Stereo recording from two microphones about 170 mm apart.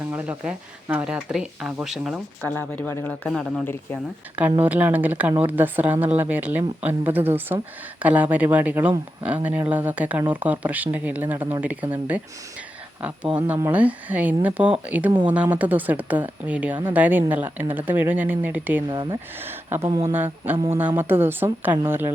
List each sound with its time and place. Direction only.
0.0 s speech: 10° right (ahead or behind)
2.4 s speech: 10° left (ahead or behind)
4.4 s a woman's voice: 10° right (ahead or behind)
18.9 s speech: 25° right (ahead or behind)
19.4 s a woman's voice: 15° right (ahead or behind)